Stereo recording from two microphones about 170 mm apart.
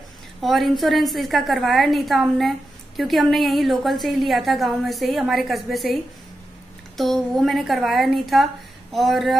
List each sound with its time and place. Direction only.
0.4 s a woman's voice: centre (ahead or behind)
7.0 s a woman's voice: centre (ahead or behind)